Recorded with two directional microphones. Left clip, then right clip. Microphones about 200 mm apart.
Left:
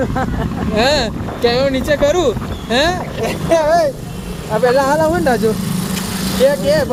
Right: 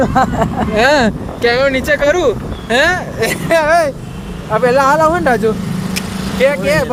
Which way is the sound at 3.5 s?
10° right (ahead or behind).